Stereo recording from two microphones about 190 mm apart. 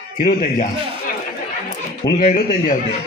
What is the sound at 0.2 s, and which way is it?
Speech, 50° left (ahead or behind).